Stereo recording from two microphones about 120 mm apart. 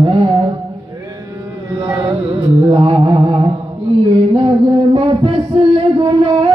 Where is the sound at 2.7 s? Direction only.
45° right (ahead or behind).